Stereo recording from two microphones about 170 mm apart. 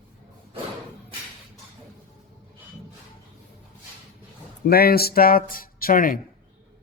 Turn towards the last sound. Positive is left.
turn(degrees=55)  # may be behind; listen again after turning